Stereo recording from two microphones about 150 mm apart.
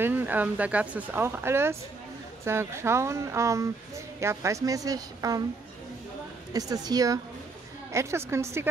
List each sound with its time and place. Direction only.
0.0 s a woman's voice: 10° right (ahead or behind)
6.5 s a woman's voice: 25° right (ahead or behind)